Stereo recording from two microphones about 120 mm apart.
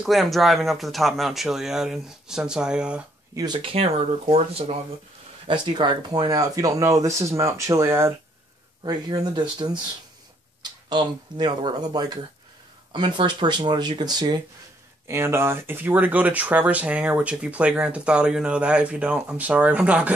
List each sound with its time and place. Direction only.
0.0 s speech: centre (ahead or behind)
3.3 s speech: 40° right (ahead or behind); by 4.7 s 55° right (ahead or behind)
5.5 s speech: 40° right (ahead or behind); by 8.1 s 20° right (ahead or behind)
8.8 s speech: 35° right (ahead or behind)
15.0 s speech: 20° right (ahead or behind)